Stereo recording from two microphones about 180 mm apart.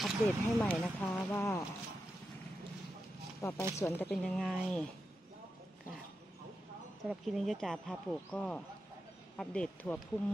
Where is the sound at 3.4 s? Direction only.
15° left (ahead or behind).